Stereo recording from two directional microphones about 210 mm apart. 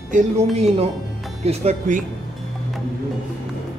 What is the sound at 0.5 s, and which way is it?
A man's voice, 30° right (ahead or behind).